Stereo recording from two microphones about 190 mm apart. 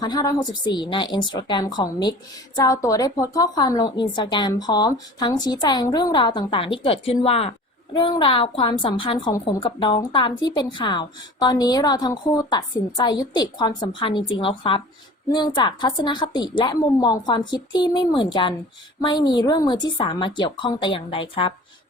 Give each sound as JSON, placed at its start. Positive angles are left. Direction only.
{"t": 0.0, "sound": "a woman's voice", "side_deg": 20}